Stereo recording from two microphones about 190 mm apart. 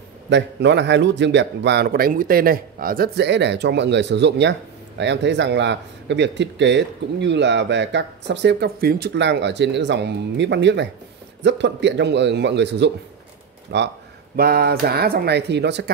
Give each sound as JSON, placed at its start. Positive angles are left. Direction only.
{"t": 0.3, "sound": "a man's voice", "side_deg": -70}
{"t": 14.3, "sound": "speech", "side_deg": -50}